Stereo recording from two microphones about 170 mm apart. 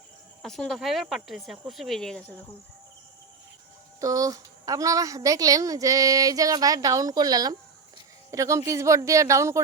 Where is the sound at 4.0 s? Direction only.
20° right (ahead or behind).